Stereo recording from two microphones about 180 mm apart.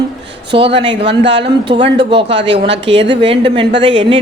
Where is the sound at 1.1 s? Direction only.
75° right (ahead or behind).